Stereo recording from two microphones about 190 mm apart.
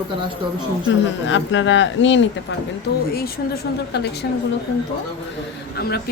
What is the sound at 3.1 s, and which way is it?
Speech, 55° left (ahead or behind).